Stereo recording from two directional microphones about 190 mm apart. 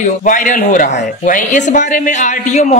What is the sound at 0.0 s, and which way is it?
Speech, 40° left (ahead or behind).